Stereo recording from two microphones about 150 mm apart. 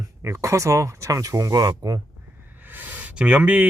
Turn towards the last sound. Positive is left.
turn(degrees=-10)  # may be behind; listen again after turning